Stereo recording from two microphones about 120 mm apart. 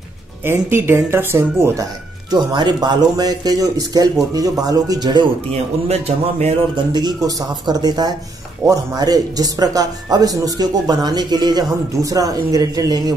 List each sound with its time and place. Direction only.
0.5 s speech: 20° right (ahead or behind)
2.3 s speech: 35° right (ahead or behind)
5.5 s a man's voice: 60° right (ahead or behind)
6.9 s speech: 35° right (ahead or behind)